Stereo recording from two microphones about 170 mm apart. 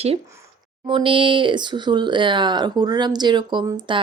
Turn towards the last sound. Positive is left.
turn(degrees=-25)  # may be behind; listen again after turning